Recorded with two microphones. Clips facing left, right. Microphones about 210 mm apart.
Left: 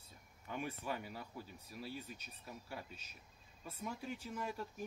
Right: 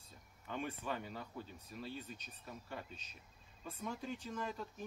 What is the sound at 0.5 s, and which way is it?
Speech, 10° left (ahead or behind).